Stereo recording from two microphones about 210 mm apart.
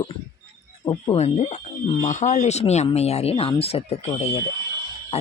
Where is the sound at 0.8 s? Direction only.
20° left (ahead or behind).